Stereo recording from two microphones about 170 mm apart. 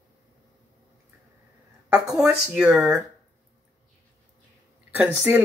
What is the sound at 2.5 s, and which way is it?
Speech, 5° right (ahead or behind).